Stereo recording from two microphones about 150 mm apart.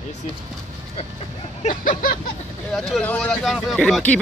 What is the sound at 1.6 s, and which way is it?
Speech, 60° left (ahead or behind).